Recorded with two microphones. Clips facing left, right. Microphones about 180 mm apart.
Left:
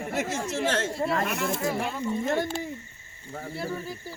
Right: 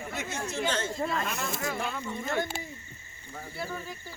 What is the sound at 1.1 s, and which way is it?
Speech, 70° left (ahead or behind).